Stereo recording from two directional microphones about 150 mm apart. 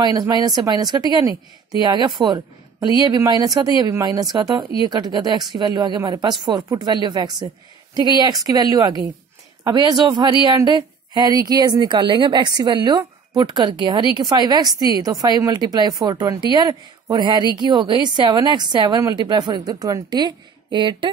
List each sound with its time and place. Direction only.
0.0 s a woman's voice: 30° right (ahead or behind)